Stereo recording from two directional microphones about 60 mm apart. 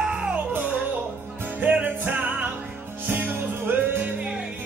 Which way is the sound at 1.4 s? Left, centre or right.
Right.